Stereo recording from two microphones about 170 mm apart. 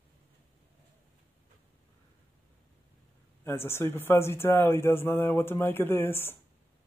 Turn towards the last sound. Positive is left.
turn(degrees=15)  # may be behind; listen again after turning